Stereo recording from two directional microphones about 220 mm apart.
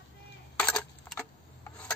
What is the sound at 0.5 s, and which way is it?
Coin, 5° left (ahead or behind).